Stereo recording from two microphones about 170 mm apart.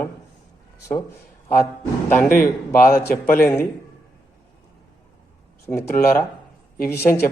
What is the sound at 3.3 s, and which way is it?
Speech, 10° left (ahead or behind).